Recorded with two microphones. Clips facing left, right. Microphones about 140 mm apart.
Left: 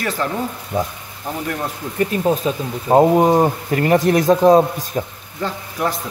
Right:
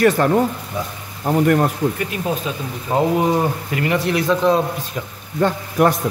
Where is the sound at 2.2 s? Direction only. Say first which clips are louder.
Left 5 dB; 35° left (ahead or behind).